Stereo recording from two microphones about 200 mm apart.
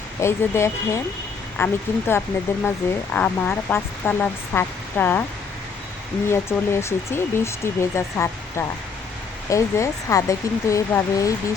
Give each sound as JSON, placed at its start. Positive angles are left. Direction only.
{"t": 0.2, "sound": "speech", "side_deg": 15}
{"t": 6.3, "sound": "speech", "side_deg": 15}